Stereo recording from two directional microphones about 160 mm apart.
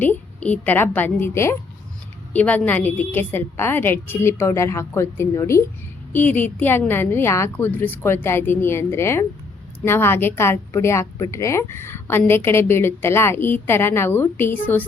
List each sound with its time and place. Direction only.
0.0 s a woman's voice: 10° left (ahead or behind)